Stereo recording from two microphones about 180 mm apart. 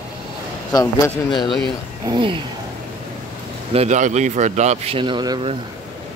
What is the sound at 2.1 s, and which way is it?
Speech, 30° right (ahead or behind).